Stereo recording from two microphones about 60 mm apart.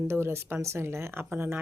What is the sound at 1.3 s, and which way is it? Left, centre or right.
Speech, right.